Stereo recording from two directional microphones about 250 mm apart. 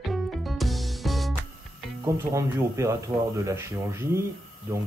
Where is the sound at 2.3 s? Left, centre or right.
Centre.